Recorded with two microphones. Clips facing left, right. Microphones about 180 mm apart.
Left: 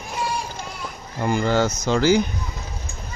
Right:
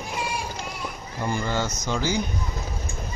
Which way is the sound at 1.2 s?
90° left.